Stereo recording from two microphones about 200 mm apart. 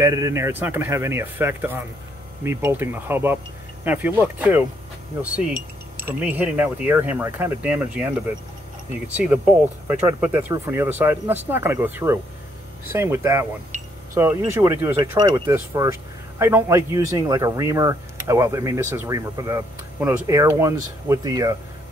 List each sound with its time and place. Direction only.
0.0 s speech: 15° right (ahead or behind)